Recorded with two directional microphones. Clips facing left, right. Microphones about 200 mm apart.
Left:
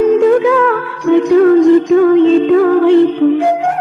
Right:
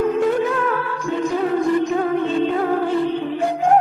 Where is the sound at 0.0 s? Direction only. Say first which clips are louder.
Left 9 dB; 90° left.